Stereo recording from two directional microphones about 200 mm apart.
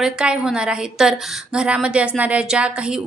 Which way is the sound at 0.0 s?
5° right (ahead or behind).